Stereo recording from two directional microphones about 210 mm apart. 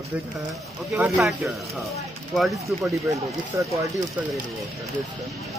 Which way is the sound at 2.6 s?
15° right (ahead or behind).